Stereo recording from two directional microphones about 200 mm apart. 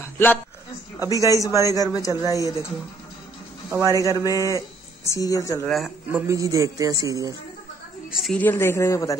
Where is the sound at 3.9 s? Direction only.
15° left (ahead or behind).